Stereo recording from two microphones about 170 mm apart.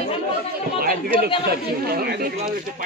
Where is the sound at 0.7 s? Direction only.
60° right (ahead or behind).